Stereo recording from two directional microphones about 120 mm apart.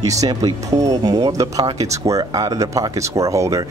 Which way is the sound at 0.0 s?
30° right (ahead or behind).